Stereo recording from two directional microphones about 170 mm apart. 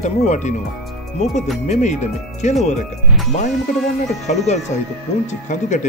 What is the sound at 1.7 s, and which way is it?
Speech, 45° left (ahead or behind).